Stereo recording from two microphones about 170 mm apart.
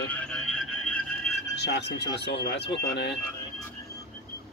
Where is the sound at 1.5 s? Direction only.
80° left.